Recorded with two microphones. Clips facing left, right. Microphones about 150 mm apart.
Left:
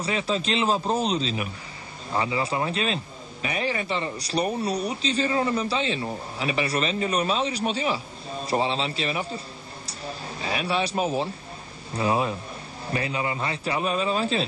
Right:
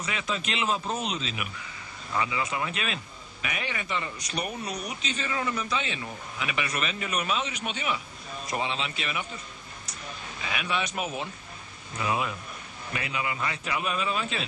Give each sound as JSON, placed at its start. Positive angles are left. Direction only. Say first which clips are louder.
{"t": 0.0, "sound": "speech", "louder": "left 6 dB", "side_deg": 30}